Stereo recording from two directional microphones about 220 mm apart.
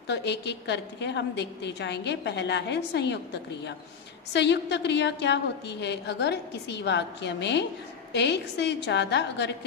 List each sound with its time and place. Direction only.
0.1 s a woman's voice: 50° left (ahead or behind)
4.3 s a woman's voice: 50° left (ahead or behind)